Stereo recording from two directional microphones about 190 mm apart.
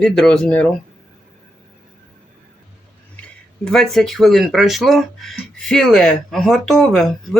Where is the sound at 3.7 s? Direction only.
Centre (ahead or behind).